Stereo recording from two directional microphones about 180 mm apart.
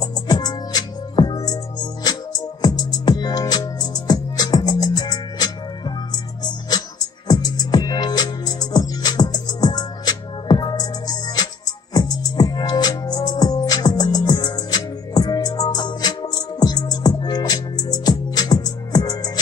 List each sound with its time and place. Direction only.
0.0 s music: 20° left (ahead or behind)